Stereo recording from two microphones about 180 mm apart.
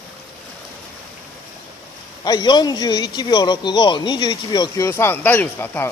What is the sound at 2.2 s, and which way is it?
A man's voice, 20° left (ahead or behind).